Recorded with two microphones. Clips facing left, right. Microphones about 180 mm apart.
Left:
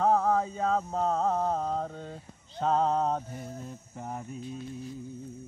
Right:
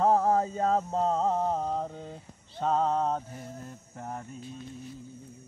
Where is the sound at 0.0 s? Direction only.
40° right (ahead or behind).